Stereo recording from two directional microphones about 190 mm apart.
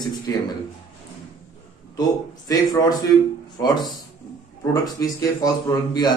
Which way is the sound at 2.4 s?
20° left (ahead or behind).